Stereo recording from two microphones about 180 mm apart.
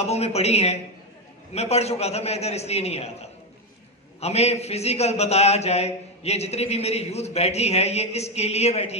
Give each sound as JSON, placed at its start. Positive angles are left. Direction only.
{"t": 0.0, "sound": "a man's voice", "side_deg": 35}